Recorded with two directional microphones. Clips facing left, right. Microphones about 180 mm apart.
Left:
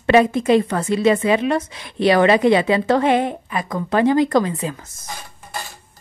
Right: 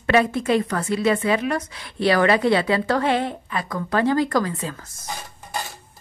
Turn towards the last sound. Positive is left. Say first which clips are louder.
# left 3 dB
turn(degrees=20)  # may be behind; listen again after turning